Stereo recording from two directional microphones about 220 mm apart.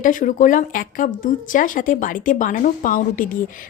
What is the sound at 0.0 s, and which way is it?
A woman's voice, 35° left (ahead or behind).